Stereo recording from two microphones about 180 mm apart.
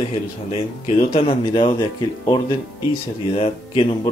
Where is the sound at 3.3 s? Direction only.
30° left (ahead or behind).